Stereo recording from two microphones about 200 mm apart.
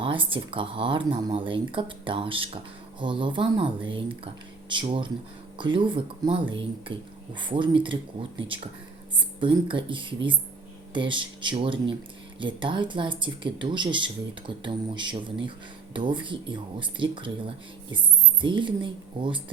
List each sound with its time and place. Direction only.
0.0 s speech: 25° right (ahead or behind)
9.4 s speech: 25° right (ahead or behind)